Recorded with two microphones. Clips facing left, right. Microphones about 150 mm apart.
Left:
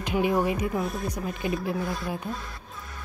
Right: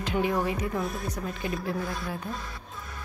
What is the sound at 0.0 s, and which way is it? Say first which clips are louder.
Speech: left 3 dB; 15° left (ahead or behind).